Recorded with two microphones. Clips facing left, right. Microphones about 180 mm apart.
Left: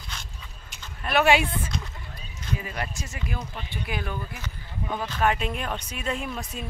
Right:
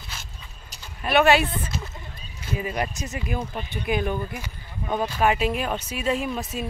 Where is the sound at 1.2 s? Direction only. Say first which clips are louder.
Right 1 dB; 10° left (ahead or behind).